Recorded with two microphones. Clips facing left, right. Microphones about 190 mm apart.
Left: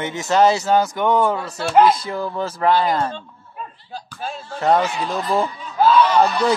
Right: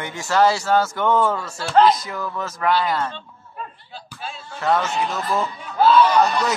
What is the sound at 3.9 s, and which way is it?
Speech, 45° left (ahead or behind).